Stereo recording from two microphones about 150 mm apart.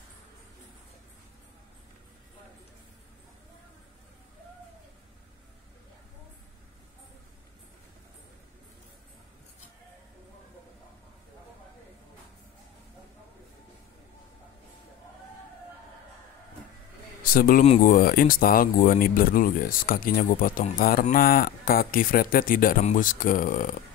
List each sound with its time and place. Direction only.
17.2 s a man's voice: 75° left (ahead or behind)